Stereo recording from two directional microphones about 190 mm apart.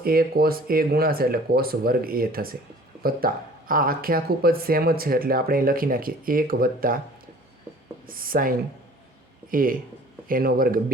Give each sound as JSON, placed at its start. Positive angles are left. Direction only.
{"t": 0.0, "sound": "speech", "side_deg": -50}
{"t": 8.0, "sound": "speech", "side_deg": -50}